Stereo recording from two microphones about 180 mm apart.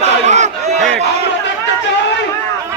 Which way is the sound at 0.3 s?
40° right (ahead or behind).